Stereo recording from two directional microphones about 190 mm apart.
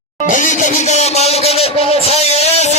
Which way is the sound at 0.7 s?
35° left (ahead or behind).